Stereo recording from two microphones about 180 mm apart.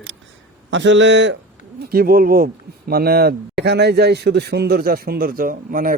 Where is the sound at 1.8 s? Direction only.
60° right (ahead or behind).